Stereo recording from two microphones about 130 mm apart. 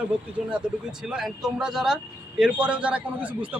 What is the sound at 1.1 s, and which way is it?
Speech, 5° right (ahead or behind).